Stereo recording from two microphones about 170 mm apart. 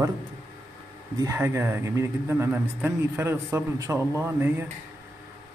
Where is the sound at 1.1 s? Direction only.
15° right (ahead or behind).